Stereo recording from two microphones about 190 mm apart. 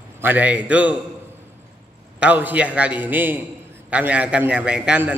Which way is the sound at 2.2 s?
10° right (ahead or behind).